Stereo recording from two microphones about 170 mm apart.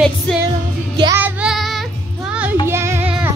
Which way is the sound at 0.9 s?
25° right (ahead or behind).